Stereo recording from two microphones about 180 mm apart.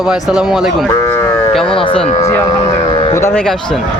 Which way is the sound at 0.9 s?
15° left (ahead or behind).